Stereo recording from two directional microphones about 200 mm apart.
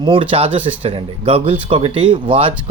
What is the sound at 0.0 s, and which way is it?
Speech, 25° right (ahead or behind).